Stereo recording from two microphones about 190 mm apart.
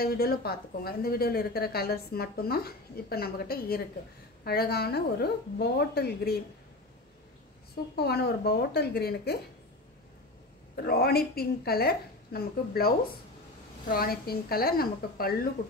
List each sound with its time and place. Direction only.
0.0 s a woman's voice: 50° left (ahead or behind)
7.9 s a woman's voice: 60° left (ahead or behind)
10.9 s a woman's voice: 55° left (ahead or behind)